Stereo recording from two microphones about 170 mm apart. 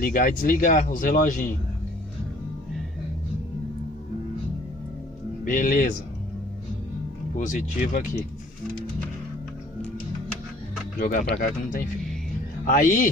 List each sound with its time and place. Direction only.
0.0 s speech: 55° left (ahead or behind)
5.4 s speech: 50° left (ahead or behind)
7.3 s speech: 50° left (ahead or behind)
11.0 s speech: 50° left (ahead or behind)